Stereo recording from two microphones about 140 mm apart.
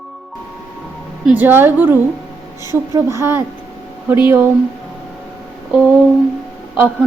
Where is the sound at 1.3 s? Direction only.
15° right (ahead or behind).